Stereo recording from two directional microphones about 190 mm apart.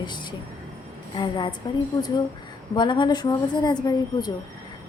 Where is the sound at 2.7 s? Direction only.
25° left (ahead or behind).